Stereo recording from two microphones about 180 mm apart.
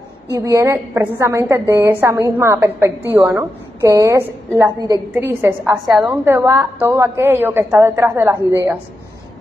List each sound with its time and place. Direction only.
0.3 s a woman's voice: 15° right (ahead or behind)